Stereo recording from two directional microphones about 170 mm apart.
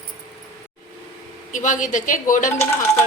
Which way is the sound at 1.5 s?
50° left (ahead or behind).